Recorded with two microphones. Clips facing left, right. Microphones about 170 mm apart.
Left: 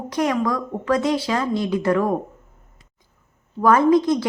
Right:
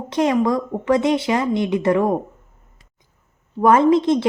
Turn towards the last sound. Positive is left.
turn(degrees=-25)  # may be behind; listen again after turning